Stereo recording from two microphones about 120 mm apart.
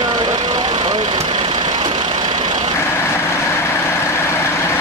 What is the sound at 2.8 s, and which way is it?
Vehicle, 20° left (ahead or behind).